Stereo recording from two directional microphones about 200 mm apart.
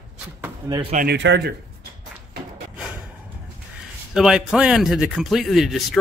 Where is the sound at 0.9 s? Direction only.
55° right (ahead or behind).